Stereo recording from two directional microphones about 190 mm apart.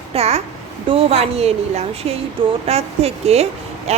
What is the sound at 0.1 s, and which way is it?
Speech, 35° right (ahead or behind).